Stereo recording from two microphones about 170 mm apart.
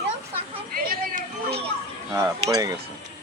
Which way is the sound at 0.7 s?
55° right (ahead or behind).